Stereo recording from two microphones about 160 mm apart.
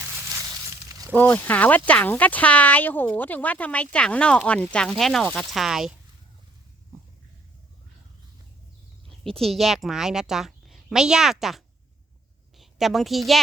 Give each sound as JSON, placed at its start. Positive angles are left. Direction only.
{"t": 0.3, "sound": "a sound", "side_deg": -20}
{"t": 1.1, "sound": "speech", "side_deg": 10}
{"t": 9.0, "sound": "a woman's voice", "side_deg": 5}